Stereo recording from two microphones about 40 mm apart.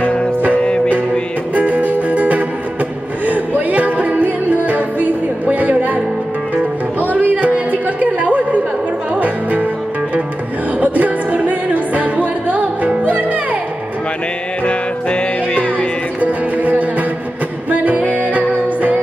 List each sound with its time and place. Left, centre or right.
1.5 s music: right
7.2 s a sound: right
9.1 s music: right
10.8 s music: right
14.6 s music: left
16.2 s music: right
18.0 s music: left
18.3 s music: right